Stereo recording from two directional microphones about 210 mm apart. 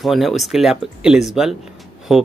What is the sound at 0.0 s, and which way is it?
Speech, centre (ahead or behind).